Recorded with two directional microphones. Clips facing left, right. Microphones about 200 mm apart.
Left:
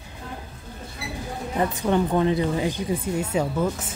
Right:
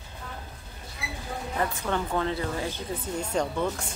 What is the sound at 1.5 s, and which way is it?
Speech, 20° left (ahead or behind).